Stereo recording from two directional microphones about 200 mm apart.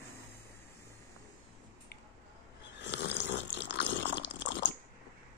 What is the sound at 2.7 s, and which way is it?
Water, 60° left (ahead or behind).